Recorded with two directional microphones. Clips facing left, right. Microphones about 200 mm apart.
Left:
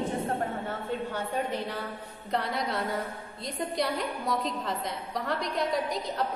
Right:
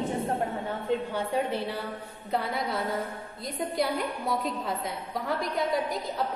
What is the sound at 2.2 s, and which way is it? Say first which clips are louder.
A woman's voice: right 1 dB; 5° right (ahead or behind).